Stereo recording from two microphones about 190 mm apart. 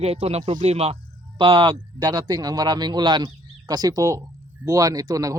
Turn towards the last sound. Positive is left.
turn(degrees=-20)  # may be behind; listen again after turning